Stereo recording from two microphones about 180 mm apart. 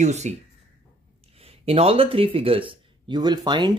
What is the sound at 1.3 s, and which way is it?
Speech, 35° right (ahead or behind).